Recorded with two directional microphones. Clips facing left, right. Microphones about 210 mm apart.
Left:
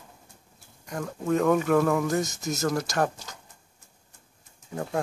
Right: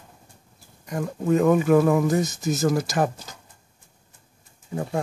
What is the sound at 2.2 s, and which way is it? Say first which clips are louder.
Speech: right 5 dB; centre (ahead or behind).